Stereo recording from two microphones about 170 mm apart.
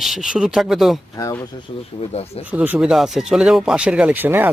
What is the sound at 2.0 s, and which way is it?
Speech, 35° left (ahead or behind).